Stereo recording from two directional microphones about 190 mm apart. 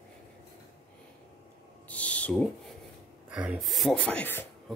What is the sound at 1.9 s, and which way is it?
Owl, 5° left (ahead or behind).